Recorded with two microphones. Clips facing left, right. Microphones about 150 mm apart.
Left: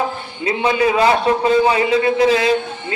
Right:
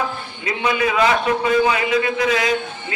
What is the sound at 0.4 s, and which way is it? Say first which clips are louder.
A man's voice: left 4 dB; 30° left (ahead or behind).